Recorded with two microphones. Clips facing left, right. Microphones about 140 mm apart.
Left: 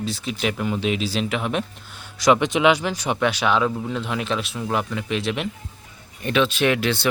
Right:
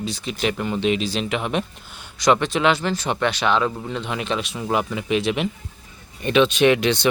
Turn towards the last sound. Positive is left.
turn(degrees=-15)  # may be behind; listen again after turning